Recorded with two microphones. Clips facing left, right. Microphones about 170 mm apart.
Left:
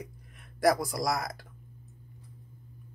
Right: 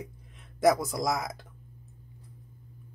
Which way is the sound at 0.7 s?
20° right (ahead or behind).